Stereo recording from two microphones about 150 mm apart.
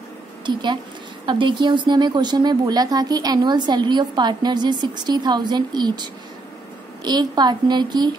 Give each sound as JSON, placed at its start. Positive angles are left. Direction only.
{"t": 0.5, "sound": "a woman's voice", "side_deg": -30}
{"t": 7.1, "sound": "speech", "side_deg": -30}